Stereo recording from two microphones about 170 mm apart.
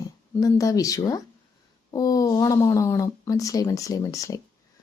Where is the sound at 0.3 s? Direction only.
20° left (ahead or behind).